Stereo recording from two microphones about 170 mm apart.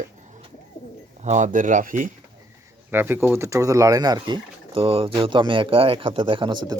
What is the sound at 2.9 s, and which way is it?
Speech, 10° right (ahead or behind).